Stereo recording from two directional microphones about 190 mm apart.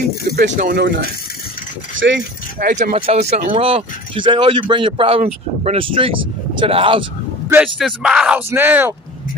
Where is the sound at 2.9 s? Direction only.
35° right (ahead or behind).